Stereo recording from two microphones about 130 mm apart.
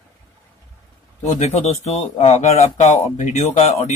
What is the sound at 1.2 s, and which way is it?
Speech, 65° left (ahead or behind).